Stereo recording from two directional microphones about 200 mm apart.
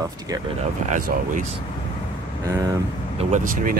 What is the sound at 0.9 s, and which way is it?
Speech, 40° right (ahead or behind).